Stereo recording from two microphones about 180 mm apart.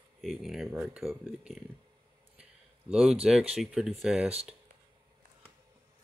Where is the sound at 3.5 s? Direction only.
5° right (ahead or behind).